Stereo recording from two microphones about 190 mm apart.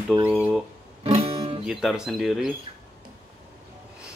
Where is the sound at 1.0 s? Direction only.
30° right (ahead or behind).